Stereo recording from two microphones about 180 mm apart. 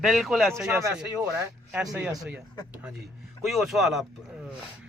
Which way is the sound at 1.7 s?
5° right (ahead or behind).